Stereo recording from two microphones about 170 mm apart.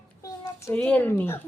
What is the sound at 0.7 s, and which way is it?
Speech, 10° left (ahead or behind).